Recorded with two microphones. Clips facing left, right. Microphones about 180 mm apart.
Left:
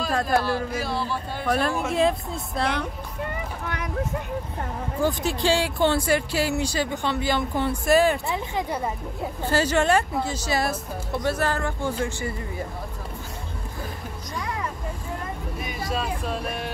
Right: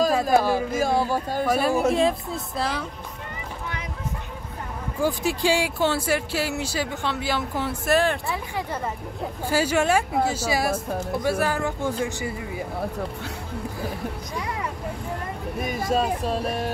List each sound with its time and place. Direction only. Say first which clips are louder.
0.1 s a man's voice: right 3 dB; 5° right (ahead or behind)
0.7 s speech: right 5 dB; 45° right (ahead or behind)
1.4 s speech: right 3 dB; 5° right (ahead or behind)
5.0 s speech: right 1 dB; 10° right (ahead or behind)
8.3 s speech: left 2 dB; 15° left (ahead or behind)
9.4 s speech: even; 10° right (ahead or behind)
15.6 s speech: right 6 dB; 45° right (ahead or behind)